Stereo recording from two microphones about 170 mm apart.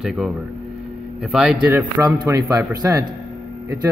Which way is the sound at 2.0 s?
25° right (ahead or behind).